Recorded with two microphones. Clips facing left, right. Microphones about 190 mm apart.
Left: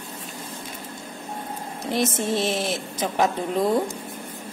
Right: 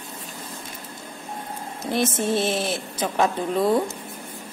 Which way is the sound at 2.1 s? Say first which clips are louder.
Right 1 dB; 25° right (ahead or behind).